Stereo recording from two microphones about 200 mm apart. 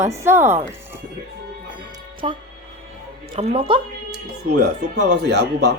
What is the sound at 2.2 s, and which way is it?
Speech, 25° right (ahead or behind).